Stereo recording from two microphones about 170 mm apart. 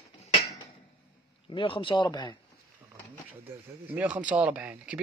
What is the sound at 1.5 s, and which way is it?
Speech, 30° left (ahead or behind).